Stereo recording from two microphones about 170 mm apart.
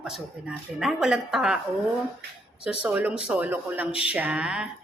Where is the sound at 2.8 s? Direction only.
10° right (ahead or behind).